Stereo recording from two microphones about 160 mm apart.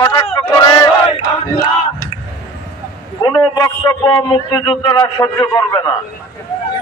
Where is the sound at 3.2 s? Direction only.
25° left (ahead or behind).